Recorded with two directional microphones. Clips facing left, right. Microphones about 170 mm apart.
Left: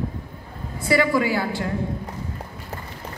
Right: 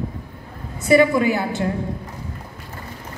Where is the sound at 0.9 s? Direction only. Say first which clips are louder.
Right 5 dB; 20° right (ahead or behind).